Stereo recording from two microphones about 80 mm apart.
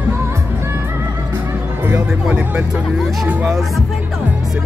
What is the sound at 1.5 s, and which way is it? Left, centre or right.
Music, right.